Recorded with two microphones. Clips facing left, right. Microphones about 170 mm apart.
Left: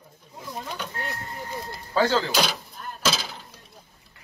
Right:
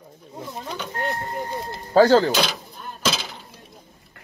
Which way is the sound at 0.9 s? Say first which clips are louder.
Right 7 dB; 45° right (ahead or behind).